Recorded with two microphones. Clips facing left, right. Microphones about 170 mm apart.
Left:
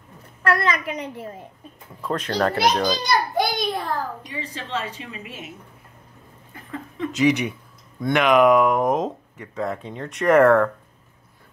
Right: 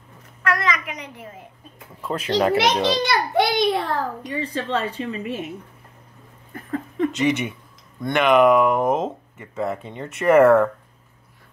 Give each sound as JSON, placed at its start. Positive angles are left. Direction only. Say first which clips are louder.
{"t": 0.4, "sound": "a child's voice", "louder": "left 2 dB", "side_deg": 30}
{"t": 2.0, "sound": "speech", "louder": "right 2 dB", "side_deg": -5}
{"t": 2.7, "sound": "a child's voice", "louder": "right 1 dB", "side_deg": -25}
{"t": 3.0, "sound": "a child's voice", "louder": "right 2 dB", "side_deg": -75}
{"t": 4.3, "sound": "a woman's voice", "louder": "right 6 dB", "side_deg": -55}
{"t": 6.5, "sound": "a sound", "louder": "right 7 dB", "side_deg": -45}
{"t": 7.1, "sound": "speech", "louder": "left 4 dB", "side_deg": 0}